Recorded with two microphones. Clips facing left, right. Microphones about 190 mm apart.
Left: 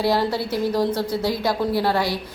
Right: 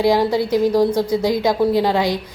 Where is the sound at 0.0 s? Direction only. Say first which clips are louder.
Right 5 dB; 15° right (ahead or behind).